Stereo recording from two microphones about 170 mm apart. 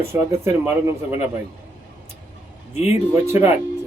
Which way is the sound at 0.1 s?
15° right (ahead or behind).